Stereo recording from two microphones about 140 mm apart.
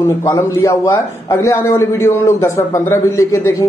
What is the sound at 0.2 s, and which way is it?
A man's voice, 20° left (ahead or behind).